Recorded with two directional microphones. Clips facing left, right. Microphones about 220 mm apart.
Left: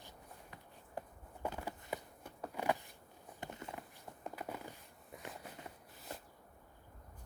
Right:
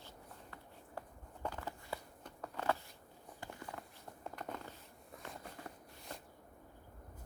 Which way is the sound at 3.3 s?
20° left (ahead or behind).